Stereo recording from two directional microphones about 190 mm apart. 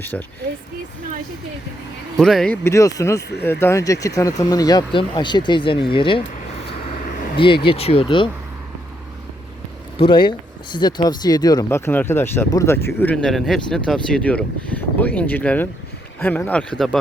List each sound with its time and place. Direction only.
0.0 s speech: 10° left (ahead or behind)
2.1 s speech: centre (ahead or behind)
2.6 s speech: 15° left (ahead or behind)
7.0 s a sound: 45° left (ahead or behind)
7.3 s speech: 25° left (ahead or behind)
10.0 s speech: 25° left (ahead or behind); by 17.0 s centre (ahead or behind)